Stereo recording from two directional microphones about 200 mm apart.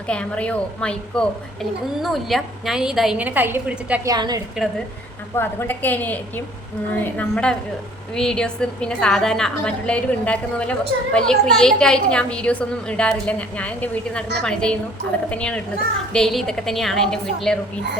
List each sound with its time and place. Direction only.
0.1 s a woman's voice: 5° left (ahead or behind); by 4.4 s 20° right (ahead or behind)
5.4 s a woman's voice: 10° left (ahead or behind)